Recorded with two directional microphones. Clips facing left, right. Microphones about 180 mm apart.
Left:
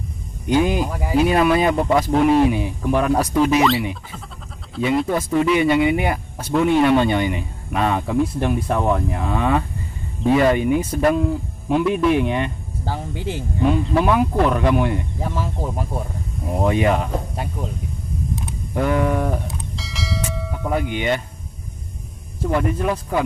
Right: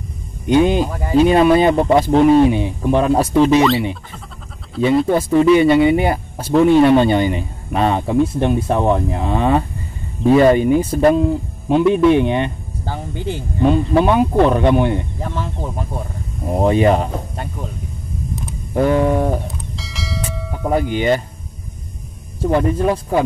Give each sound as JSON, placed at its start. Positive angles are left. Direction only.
{"t": 0.5, "sound": "speech", "side_deg": -25}
{"t": 0.8, "sound": "speech", "side_deg": 5}
{"t": 1.1, "sound": "speech", "side_deg": -30}
{"t": 4.8, "sound": "speech", "side_deg": -30}
{"t": 12.8, "sound": "speech", "side_deg": 0}
{"t": 13.7, "sound": "speech", "side_deg": -25}
{"t": 15.2, "sound": "speech", "side_deg": 5}
{"t": 16.4, "sound": "speech", "side_deg": -30}
{"t": 18.8, "sound": "speech", "side_deg": -30}
{"t": 19.7, "sound": "church bell", "side_deg": 0}
{"t": 20.9, "sound": "speech", "side_deg": -35}
{"t": 22.4, "sound": "speech", "side_deg": -30}